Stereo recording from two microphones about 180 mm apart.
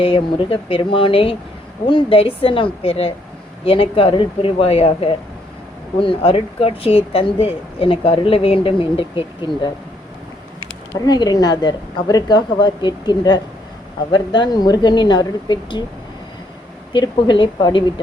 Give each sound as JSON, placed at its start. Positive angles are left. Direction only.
{"t": 0.0, "sound": "speech", "side_deg": 30}
{"t": 10.9, "sound": "speech", "side_deg": 20}
{"t": 16.9, "sound": "speech", "side_deg": 25}